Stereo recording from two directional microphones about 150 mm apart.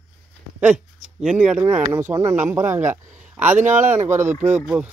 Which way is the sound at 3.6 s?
55° right (ahead or behind).